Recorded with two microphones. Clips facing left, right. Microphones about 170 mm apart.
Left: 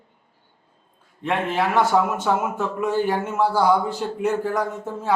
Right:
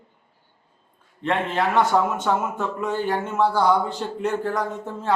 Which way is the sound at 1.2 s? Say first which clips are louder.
Even; 5° left (ahead or behind).